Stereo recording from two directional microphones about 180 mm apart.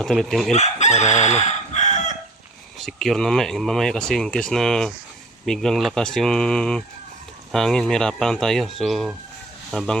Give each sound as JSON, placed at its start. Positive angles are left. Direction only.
{"t": 0.0, "sound": "speech", "side_deg": 0}
{"t": 0.5, "sound": "chicken", "side_deg": 40}
{"t": 2.7, "sound": "speech", "side_deg": 0}